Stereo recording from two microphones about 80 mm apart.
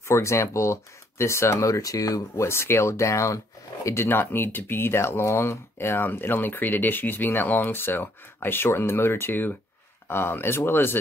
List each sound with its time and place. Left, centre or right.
0.1 s speech: left